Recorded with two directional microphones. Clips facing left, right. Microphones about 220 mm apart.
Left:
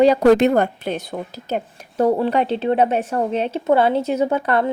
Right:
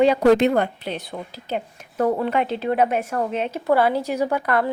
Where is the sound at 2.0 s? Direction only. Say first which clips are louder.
Left 3 dB; 30° left (ahead or behind).